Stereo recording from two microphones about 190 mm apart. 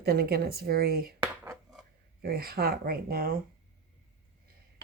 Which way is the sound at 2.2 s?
55° right (ahead or behind).